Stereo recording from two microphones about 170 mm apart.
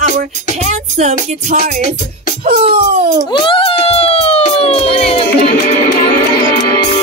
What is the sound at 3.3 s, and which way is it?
Speech, 30° left (ahead or behind).